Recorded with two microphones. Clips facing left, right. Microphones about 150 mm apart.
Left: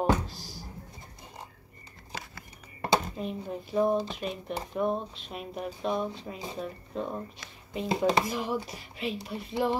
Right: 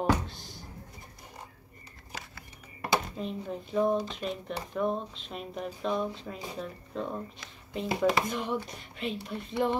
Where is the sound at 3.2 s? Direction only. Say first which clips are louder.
Left 1 dB; 5° left (ahead or behind).